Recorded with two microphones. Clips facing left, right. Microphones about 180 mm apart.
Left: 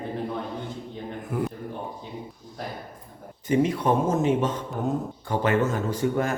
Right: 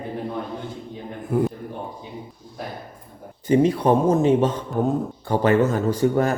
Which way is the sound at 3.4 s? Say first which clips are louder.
Right 5 dB; 30° right (ahead or behind).